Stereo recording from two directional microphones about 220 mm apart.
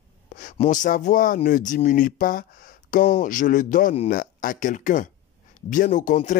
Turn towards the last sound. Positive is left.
turn(degrees=35)  # may be behind; listen again after turning